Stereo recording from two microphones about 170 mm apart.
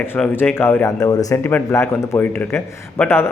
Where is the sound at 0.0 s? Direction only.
10° left (ahead or behind).